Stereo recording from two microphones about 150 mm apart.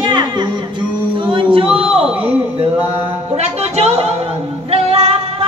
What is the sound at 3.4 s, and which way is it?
Music, 45° right (ahead or behind).